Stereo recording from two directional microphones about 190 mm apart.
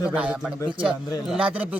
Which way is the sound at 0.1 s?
5° right (ahead or behind).